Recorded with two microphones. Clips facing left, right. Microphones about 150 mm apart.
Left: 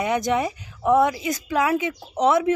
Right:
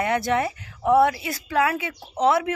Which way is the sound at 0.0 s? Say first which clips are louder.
Left 1 dB; 15° left (ahead or behind).